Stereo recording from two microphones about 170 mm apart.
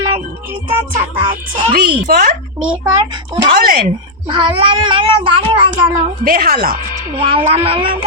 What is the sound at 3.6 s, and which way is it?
Speech, 60° right (ahead or behind).